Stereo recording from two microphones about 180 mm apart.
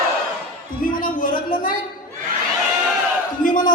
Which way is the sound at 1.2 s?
50° left (ahead or behind).